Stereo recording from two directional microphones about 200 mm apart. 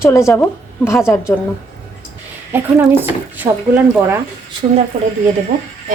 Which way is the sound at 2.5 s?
10° right (ahead or behind).